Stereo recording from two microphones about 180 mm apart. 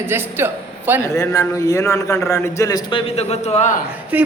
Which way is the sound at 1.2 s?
20° left (ahead or behind).